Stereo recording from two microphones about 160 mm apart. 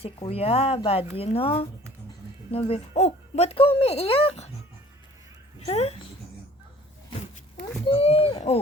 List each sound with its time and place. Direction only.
0.0 s speech: 40° left (ahead or behind)
5.5 s speech: 40° left (ahead or behind)
7.9 s speech: 40° left (ahead or behind)